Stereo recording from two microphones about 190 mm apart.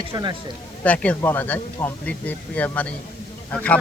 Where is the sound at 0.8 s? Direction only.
5° left (ahead or behind).